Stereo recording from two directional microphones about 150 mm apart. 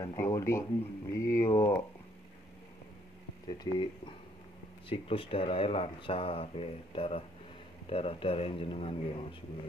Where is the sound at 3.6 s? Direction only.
35° left (ahead or behind).